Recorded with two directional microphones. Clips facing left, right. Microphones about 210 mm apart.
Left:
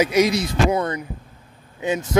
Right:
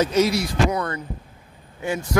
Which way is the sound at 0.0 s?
15° left (ahead or behind).